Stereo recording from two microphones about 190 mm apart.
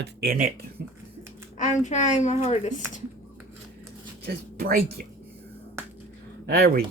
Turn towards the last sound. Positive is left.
turn(degrees=-55)  # may be behind; listen again after turning